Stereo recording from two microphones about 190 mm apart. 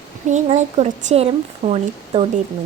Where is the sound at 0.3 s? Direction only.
40° right (ahead or behind).